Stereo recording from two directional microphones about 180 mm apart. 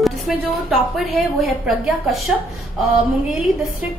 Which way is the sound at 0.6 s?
Centre (ahead or behind).